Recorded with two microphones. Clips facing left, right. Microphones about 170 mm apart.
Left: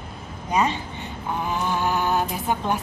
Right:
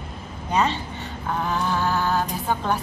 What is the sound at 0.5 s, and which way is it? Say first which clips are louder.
A woman's voice: even; 10° left (ahead or behind).